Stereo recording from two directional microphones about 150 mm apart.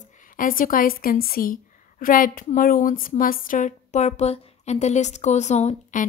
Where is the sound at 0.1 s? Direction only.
65° left (ahead or behind).